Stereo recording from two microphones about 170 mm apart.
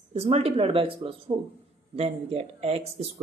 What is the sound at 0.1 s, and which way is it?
Speech, 35° right (ahead or behind).